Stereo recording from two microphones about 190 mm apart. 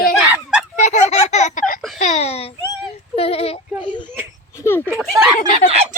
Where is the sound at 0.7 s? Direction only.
40° left (ahead or behind).